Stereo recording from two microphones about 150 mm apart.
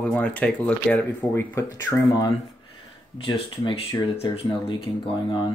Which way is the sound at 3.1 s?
35° left (ahead or behind).